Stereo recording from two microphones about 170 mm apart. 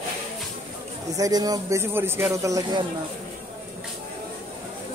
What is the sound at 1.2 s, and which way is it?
Speech, 20° right (ahead or behind).